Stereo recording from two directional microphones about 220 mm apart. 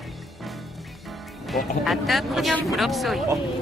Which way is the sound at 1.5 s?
Centre (ahead or behind).